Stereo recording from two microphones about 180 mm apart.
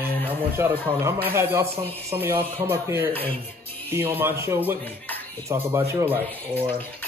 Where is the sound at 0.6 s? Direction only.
15° right (ahead or behind).